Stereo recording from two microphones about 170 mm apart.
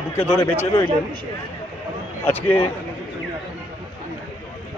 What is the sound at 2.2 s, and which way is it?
Speech, 10° left (ahead or behind).